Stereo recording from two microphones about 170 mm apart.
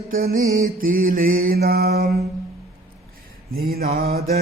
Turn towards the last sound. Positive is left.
turn(degrees=-60)  # may be behind; listen again after turning